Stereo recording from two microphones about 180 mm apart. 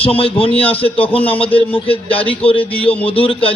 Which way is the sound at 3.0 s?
30° left (ahead or behind).